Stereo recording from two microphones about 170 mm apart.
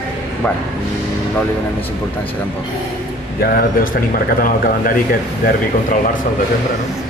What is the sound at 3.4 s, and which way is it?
Speech, 60° left (ahead or behind).